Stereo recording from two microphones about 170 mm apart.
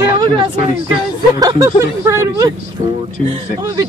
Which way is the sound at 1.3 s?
20° right (ahead or behind).